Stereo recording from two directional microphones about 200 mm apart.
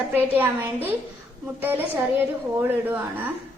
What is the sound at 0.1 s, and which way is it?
A woman's voice, 10° right (ahead or behind).